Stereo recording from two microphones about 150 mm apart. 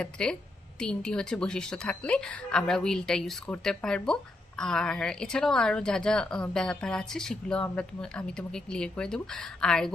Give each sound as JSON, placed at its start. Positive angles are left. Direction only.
{"t": 0.0, "sound": "a woman's voice", "side_deg": 5}